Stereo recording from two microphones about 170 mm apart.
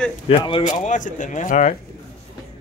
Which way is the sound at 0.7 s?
50° left (ahead or behind).